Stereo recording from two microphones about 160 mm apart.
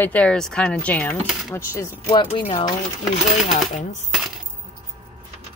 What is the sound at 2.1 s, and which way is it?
Speech, 35° left (ahead or behind).